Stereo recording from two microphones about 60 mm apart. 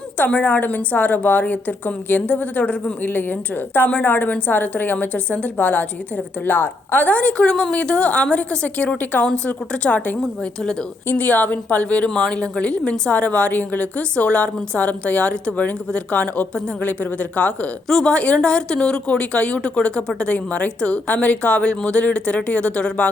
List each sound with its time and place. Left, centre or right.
0.2 s a woman's voice: left
10.2 s a woman's voice: centre
11.1 s a woman's voice: left